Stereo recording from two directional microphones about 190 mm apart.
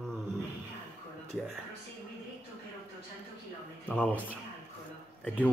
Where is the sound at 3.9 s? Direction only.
5° left (ahead or behind).